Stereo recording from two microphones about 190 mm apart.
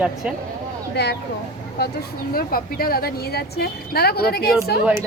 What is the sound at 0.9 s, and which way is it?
Speech, 60° left (ahead or behind).